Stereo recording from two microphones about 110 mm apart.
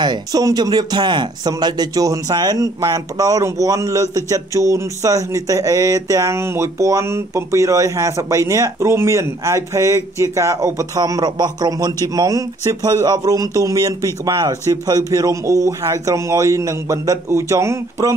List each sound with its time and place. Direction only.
0.0 s speech: 40° right (ahead or behind)